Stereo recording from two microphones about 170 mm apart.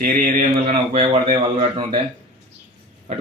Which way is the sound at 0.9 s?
40° right (ahead or behind).